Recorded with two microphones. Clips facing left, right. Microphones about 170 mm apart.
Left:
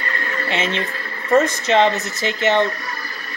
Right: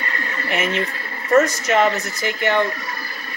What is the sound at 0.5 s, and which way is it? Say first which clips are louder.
Speech: right 1 dB; 25° left (ahead or behind).